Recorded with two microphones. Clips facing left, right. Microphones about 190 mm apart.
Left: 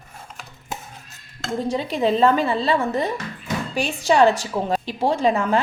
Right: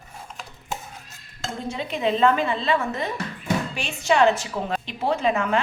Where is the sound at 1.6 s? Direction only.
35° left (ahead or behind).